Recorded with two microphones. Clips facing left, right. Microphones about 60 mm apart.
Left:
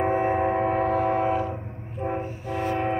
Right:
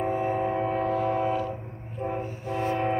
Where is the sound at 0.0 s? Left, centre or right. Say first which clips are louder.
Left 4 dB; left.